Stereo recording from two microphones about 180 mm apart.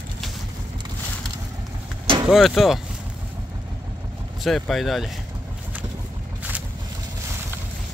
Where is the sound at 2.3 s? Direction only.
Centre (ahead or behind).